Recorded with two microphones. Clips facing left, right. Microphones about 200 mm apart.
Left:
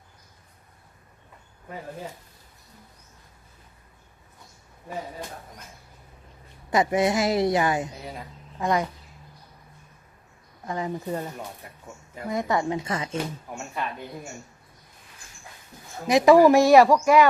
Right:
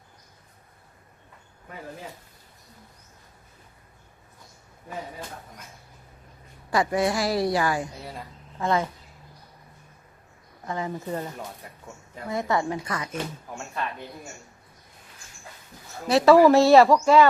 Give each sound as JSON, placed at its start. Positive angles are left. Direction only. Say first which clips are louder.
{"t": 6.7, "sound": "a woman's voice", "louder": "left 2 dB", "side_deg": 20}
{"t": 10.7, "sound": "speech", "louder": "left 1 dB", "side_deg": 20}
{"t": 12.3, "sound": "a woman's voice", "louder": "left 1 dB", "side_deg": 20}
{"t": 16.0, "sound": "speech", "louder": "even", "side_deg": 15}